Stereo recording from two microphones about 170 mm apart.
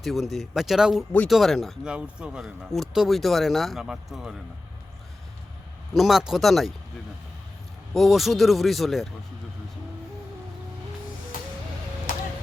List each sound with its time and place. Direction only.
0.0 s speech: centre (ahead or behind)
5.9 s speech: centre (ahead or behind)
7.9 s speech: centre (ahead or behind)
12.1 s a sound: 55° left (ahead or behind)